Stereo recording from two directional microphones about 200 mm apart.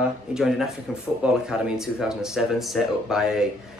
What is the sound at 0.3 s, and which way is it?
Speech, centre (ahead or behind).